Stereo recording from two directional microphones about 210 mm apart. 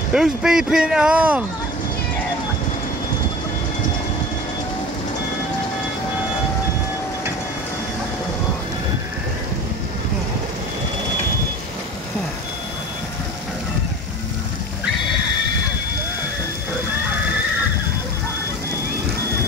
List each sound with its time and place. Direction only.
0.1 s speech: 5° right (ahead or behind)